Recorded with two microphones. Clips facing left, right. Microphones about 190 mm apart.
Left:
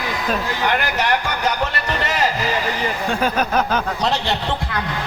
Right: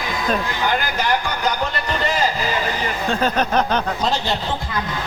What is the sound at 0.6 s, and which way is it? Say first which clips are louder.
Speech: left 2 dB; 65° left (ahead or behind).